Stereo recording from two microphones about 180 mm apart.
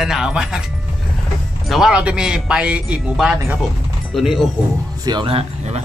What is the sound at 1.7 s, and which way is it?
A man's voice, 5° right (ahead or behind).